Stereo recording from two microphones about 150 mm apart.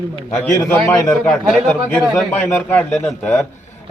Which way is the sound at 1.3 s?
5° left (ahead or behind).